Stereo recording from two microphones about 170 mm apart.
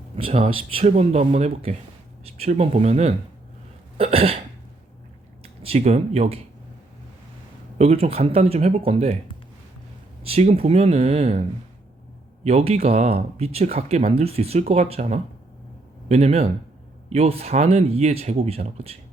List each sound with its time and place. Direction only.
0.2 s speech: 35° right (ahead or behind)
3.9 s cough: 35° right (ahead or behind)
5.4 s speech: 35° right (ahead or behind)
7.8 s speech: 40° right (ahead or behind)
10.2 s speech: 35° right (ahead or behind)
12.5 s speech: 40° right (ahead or behind)